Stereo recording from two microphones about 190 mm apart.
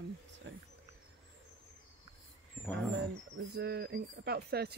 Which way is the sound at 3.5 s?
60° right (ahead or behind).